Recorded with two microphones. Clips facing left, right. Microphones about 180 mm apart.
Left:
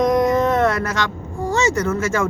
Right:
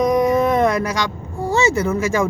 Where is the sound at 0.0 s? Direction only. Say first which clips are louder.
Even; 10° right (ahead or behind).